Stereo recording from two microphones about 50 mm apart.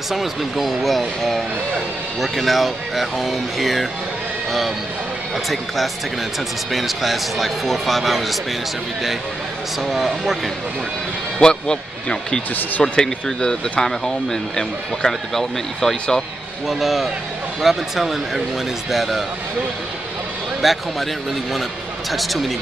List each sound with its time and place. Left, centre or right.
0.1 s speech: centre
6.7 s speech: centre
9.8 s speech: centre
11.4 s speech: centre
16.6 s speech: centre
20.6 s speech: centre
22.1 s speech: centre